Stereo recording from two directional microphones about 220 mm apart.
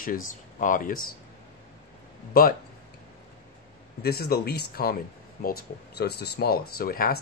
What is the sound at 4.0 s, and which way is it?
Speech, 45° left (ahead or behind).